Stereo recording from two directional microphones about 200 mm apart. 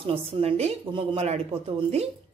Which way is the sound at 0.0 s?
30° right (ahead or behind).